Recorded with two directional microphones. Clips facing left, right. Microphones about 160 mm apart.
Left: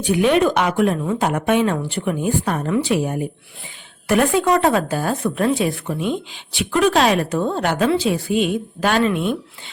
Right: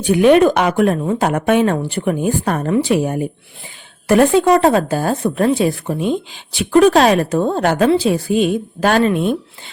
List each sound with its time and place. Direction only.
0.0 s speech: 50° right (ahead or behind)
4.1 s speech: 35° right (ahead or behind)